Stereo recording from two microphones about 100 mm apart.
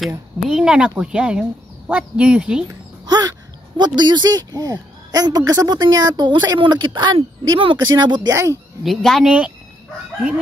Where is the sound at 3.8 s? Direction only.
50° right (ahead or behind).